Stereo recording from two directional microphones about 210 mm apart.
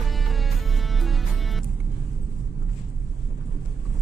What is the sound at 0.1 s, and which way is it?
Music, centre (ahead or behind).